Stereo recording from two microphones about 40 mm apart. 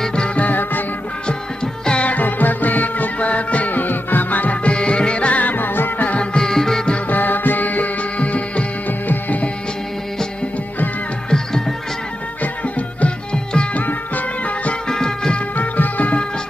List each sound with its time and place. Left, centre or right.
0.4 s music: left
1.2 s music: left
2.0 s music: left
4.6 s music: left
5.3 s music: left
6.3 s music: centre
7.1 s music: left
8.8 s music: left
11.2 s music: centre
12.4 s music: left
14.9 s music: centre
15.5 s music: left